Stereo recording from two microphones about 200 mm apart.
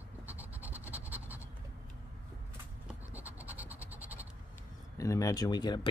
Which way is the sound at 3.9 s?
10° right (ahead or behind).